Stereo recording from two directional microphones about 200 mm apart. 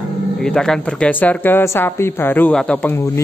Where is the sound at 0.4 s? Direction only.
5° left (ahead or behind).